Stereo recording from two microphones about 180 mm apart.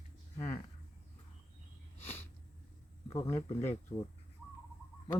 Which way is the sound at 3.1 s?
15° left (ahead or behind).